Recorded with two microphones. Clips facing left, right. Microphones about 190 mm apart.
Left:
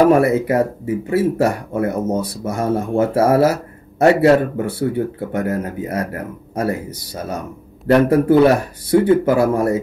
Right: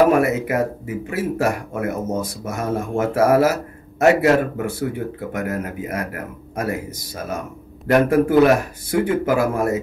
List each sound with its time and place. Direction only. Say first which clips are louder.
0.2 s speech: left 4 dB; 30° left (ahead or behind)
7.8 s speech: left 2 dB; 30° left (ahead or behind)